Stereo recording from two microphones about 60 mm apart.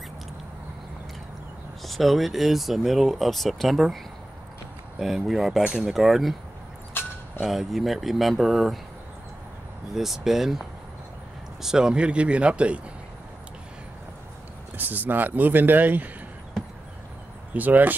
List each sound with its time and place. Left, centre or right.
1.9 s speech: centre
5.0 s speech: centre
7.4 s speech: centre
9.9 s speech: centre
11.6 s speech: centre
14.8 s speech: right
17.6 s speech: right